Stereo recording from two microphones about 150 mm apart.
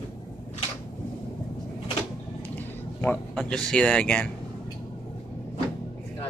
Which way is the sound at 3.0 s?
10° left (ahead or behind).